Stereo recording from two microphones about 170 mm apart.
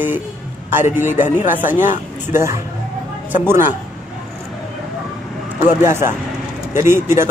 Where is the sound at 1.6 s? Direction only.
10° right (ahead or behind).